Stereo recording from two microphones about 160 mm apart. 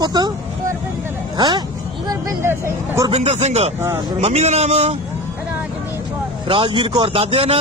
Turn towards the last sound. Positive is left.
turn(degrees=-40)  # may be behind; listen again after turning